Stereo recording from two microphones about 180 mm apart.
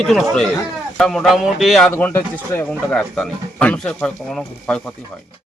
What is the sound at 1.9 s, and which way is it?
Speech, 10° left (ahead or behind).